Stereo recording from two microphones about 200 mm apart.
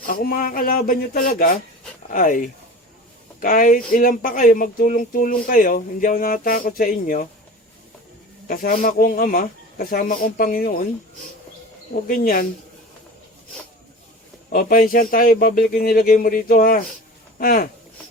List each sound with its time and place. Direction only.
0.0 s speech: 45° left (ahead or behind)
8.4 s speech: 45° left (ahead or behind)
12.0 s speech: 45° left (ahead or behind)
14.5 s speech: 45° left (ahead or behind)